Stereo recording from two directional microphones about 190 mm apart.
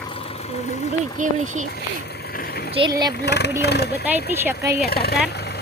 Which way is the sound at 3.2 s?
60° left (ahead or behind).